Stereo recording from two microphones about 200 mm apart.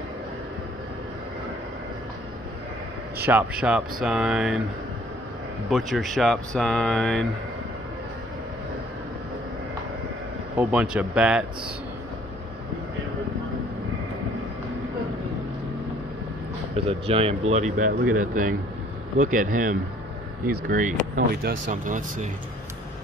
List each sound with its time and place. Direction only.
3.3 s speech: 5° right (ahead or behind)
5.7 s speech: centre (ahead or behind)
10.6 s speech: 5° right (ahead or behind)
16.7 s speech: 30° right (ahead or behind)